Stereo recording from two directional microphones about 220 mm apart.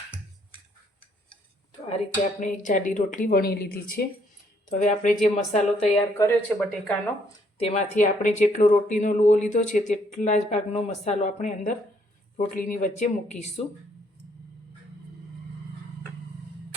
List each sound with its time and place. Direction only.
2.4 s speech: 35° left (ahead or behind)
4.8 s speech: 35° left (ahead or behind)
6.1 s speech: 10° left (ahead or behind)
7.6 s speech: 30° left (ahead or behind)